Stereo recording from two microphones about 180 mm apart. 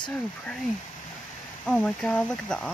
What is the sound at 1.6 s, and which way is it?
Speech, 5° left (ahead or behind).